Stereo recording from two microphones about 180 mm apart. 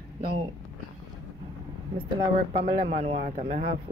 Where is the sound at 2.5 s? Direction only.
40° right (ahead or behind).